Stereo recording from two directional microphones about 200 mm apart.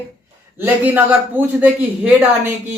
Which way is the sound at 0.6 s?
10° right (ahead or behind).